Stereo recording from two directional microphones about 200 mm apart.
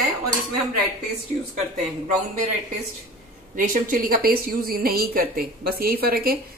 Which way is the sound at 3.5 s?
45° right (ahead or behind).